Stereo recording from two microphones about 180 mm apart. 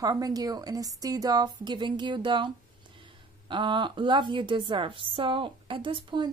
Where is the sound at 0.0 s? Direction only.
20° right (ahead or behind).